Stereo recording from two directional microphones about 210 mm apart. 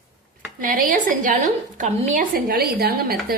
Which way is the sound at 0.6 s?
40° right (ahead or behind).